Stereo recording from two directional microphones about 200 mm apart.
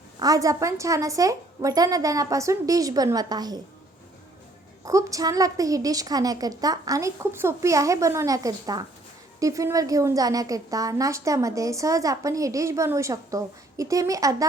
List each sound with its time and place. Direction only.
0.2 s a woman's voice: 15° right (ahead or behind)
4.9 s a woman's voice: 15° right (ahead or behind)